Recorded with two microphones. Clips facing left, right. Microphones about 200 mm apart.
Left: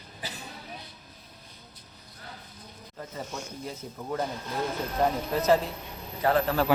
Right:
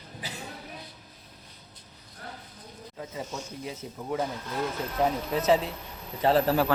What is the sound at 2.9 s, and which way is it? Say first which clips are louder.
A man's voice: right 1 dB; 5° right (ahead or behind).